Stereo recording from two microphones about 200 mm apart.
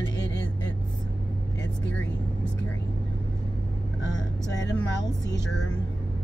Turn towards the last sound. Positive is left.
turn(degrees=65)  # may be behind; listen again after turning